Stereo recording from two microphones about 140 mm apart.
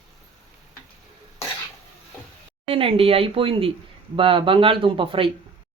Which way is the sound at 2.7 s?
40° right (ahead or behind).